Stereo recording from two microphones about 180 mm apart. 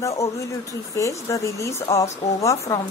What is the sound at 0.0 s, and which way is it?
Speech, 15° left (ahead or behind).